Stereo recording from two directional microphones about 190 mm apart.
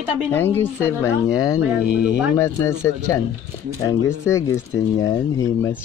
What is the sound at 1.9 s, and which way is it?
Speech, 5° right (ahead or behind).